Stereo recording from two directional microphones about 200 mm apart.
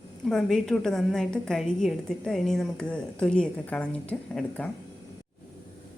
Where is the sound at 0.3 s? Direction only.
Centre (ahead or behind).